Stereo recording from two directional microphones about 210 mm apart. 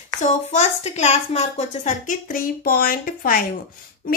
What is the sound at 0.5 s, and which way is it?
A woman's voice, 30° left (ahead or behind).